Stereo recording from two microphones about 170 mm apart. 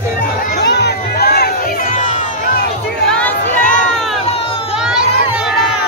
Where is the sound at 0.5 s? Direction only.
75° left (ahead or behind); by 2.2 s 45° left (ahead or behind).